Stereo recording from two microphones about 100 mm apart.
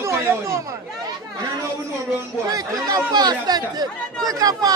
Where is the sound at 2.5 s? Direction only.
35° right (ahead or behind).